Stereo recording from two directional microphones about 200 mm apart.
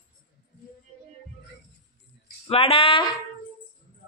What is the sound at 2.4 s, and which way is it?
Speech, 30° left (ahead or behind).